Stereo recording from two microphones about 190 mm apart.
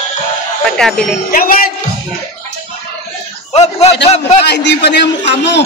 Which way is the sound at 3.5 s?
35° left (ahead or behind).